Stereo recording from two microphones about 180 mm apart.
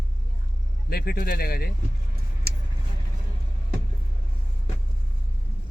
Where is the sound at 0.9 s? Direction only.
60° left (ahead or behind).